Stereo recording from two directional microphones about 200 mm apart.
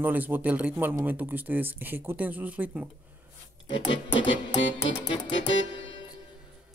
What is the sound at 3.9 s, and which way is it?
Music, 70° left (ahead or behind).